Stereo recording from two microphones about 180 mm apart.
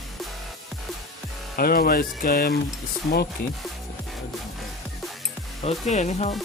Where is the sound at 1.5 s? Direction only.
55° left (ahead or behind).